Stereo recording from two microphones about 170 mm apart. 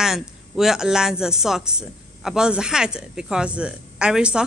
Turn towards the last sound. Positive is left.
turn(degrees=-5)  # may be behind; listen again after turning